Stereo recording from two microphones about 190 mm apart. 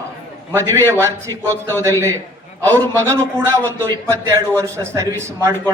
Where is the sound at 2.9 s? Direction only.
15° right (ahead or behind).